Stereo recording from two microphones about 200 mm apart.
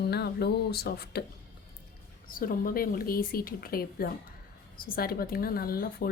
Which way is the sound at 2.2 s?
45° left (ahead or behind).